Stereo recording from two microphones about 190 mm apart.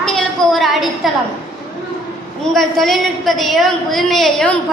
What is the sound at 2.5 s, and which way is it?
A woman's voice, centre (ahead or behind).